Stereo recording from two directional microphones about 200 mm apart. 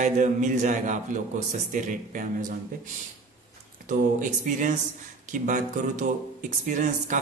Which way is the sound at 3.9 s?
40° right (ahead or behind).